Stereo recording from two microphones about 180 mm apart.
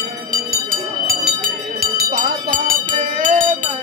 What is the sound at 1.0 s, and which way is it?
Music, 55° right (ahead or behind).